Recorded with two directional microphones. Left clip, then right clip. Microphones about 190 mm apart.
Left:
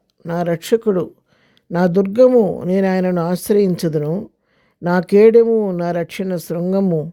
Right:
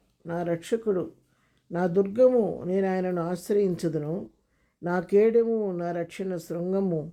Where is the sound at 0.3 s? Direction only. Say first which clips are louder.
Left 11 dB; 60° left (ahead or behind).